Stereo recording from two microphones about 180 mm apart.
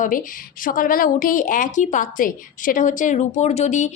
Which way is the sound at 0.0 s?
50° left (ahead or behind).